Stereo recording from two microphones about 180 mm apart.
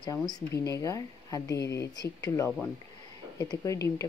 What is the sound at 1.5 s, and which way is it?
Speech, 70° left (ahead or behind).